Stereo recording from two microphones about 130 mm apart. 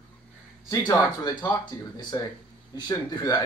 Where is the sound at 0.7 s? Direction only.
30° left (ahead or behind).